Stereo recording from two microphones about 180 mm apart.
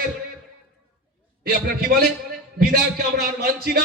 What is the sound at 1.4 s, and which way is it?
Speech, 55° right (ahead or behind).